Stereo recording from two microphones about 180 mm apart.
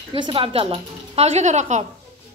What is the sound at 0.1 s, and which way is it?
A woman's voice, 30° right (ahead or behind).